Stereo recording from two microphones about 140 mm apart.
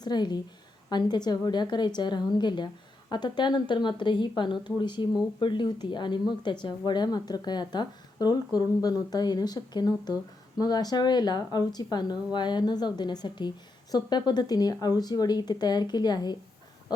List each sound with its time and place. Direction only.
0.0 s speech: 30° left (ahead or behind)